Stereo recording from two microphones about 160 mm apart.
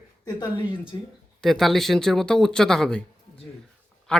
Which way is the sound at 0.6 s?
30° left (ahead or behind).